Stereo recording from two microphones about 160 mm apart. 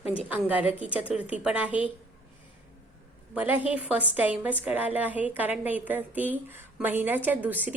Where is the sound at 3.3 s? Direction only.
10° right (ahead or behind).